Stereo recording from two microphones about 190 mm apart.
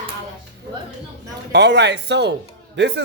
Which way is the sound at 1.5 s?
65° right (ahead or behind).